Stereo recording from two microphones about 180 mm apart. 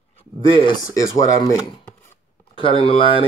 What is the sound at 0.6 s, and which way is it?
Speech, 20° left (ahead or behind).